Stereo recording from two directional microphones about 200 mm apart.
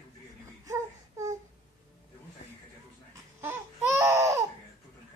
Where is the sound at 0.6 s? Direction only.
15° right (ahead or behind).